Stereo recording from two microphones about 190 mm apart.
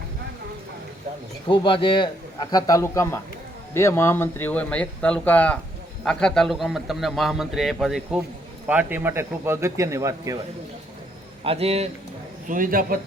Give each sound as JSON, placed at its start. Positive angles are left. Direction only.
{"t": 1.5, "sound": "a man's voice", "side_deg": 25}
{"t": 11.4, "sound": "a man's voice", "side_deg": -30}
{"t": 12.5, "sound": "a man's voice", "side_deg": -45}